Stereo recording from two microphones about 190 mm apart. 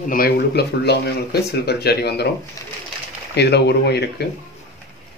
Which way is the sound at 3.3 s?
60° left (ahead or behind).